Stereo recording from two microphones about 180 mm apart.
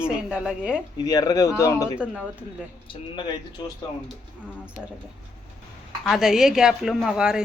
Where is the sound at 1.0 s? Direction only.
20° left (ahead or behind).